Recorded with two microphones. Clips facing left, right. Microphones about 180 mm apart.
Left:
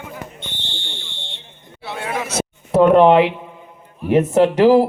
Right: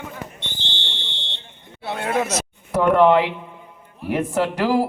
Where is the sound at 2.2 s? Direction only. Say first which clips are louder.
Left 1 dB; 30° left (ahead or behind).